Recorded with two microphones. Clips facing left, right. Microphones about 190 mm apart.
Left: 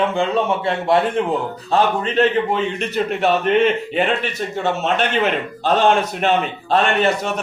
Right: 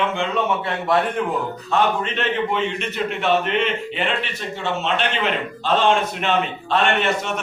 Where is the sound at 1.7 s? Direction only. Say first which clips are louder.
Left 3 dB; 35° left (ahead or behind).